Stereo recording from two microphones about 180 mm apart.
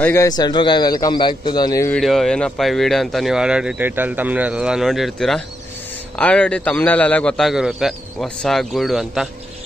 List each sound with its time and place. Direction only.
0.0 s a man's voice: 15° left (ahead or behind)
1.9 s speech: centre (ahead or behind)